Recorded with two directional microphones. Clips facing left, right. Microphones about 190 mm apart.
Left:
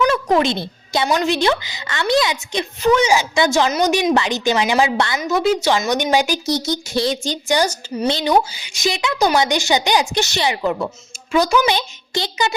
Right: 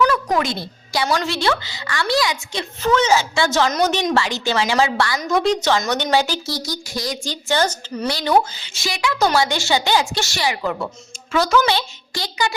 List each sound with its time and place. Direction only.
0.1 s a sound: 25° left (ahead or behind)
1.0 s a woman's voice: 15° left (ahead or behind)
5.2 s a woman's voice: 5° left (ahead or behind); by 12.5 s 20° left (ahead or behind)